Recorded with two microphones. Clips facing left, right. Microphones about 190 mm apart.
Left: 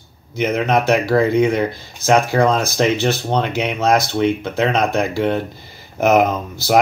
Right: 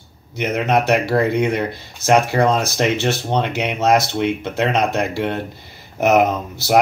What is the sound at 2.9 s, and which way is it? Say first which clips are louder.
Speech: left 1 dB; 25° right (ahead or behind).